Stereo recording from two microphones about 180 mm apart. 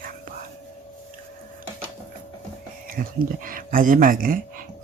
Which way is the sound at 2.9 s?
55° right (ahead or behind).